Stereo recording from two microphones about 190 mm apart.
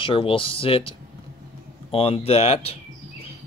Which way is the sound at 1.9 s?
30° left (ahead or behind).